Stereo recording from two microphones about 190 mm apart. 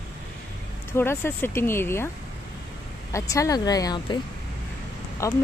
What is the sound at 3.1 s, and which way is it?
Speech, 15° left (ahead or behind).